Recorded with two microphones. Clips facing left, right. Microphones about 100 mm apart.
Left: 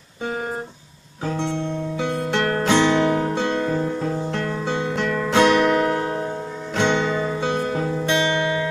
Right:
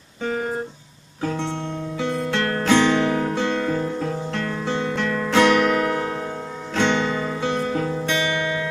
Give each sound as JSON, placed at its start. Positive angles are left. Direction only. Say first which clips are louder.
{"t": 2.0, "sound": "music", "louder": "even", "side_deg": 20}
{"t": 6.7, "sound": "music", "louder": "even", "side_deg": 20}